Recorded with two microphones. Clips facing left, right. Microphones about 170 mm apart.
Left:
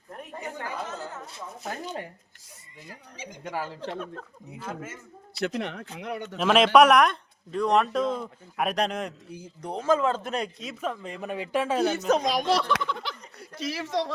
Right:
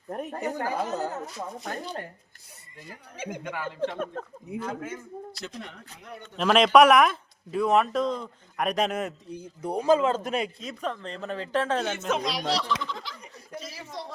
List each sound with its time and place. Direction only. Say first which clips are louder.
0.1 s speech: right 7 dB; 45° right (ahead or behind)
1.7 s speech: left 1 dB; 5° left (ahead or behind)
3.2 s speech: even; 55° right (ahead or behind)
4.8 s a man's voice: right 5 dB; centre (ahead or behind)
5.4 s speech: left 10 dB; 75° left (ahead or behind); by 6.2 s 90° left
6.2 s speech: even; centre (ahead or behind)
10.3 s speech: right 1 dB; centre (ahead or behind)
11.9 s speech: left 4 dB; 40° left (ahead or behind); by 13.1 s 65° left (ahead or behind)
13.6 s speech: left 10 dB; 80° left